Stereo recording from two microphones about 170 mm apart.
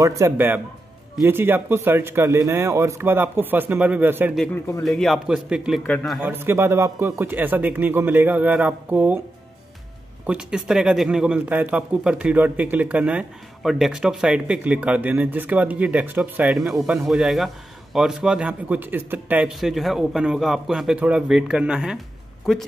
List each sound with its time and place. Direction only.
0.0 s a man's voice: 20° right (ahead or behind)
4.8 s a man's voice: centre (ahead or behind)
10.2 s a man's voice: 5° right (ahead or behind)